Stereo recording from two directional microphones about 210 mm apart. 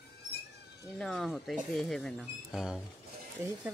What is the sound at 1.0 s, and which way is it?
Speech, centre (ahead or behind).